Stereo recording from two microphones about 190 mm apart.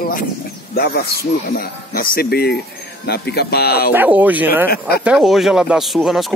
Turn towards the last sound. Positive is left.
turn(degrees=0)  # may be behind; listen again after turning